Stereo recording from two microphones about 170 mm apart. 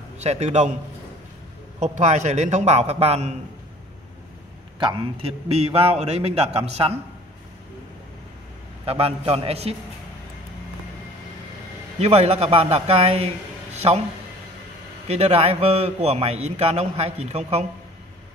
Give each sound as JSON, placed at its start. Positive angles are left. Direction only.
{"t": 0.2, "sound": "a man's voice", "side_deg": -40}
{"t": 1.8, "sound": "a man's voice", "side_deg": -45}
{"t": 4.7, "sound": "a man's voice", "side_deg": -30}
{"t": 8.8, "sound": "a man's voice", "side_deg": -35}
{"t": 12.0, "sound": "a man's voice", "side_deg": -40}
{"t": 15.0, "sound": "a man's voice", "side_deg": -40}